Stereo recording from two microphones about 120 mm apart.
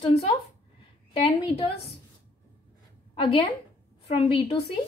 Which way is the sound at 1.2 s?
45° left (ahead or behind).